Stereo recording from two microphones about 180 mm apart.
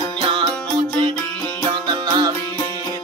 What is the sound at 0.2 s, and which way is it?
Music, 25° right (ahead or behind).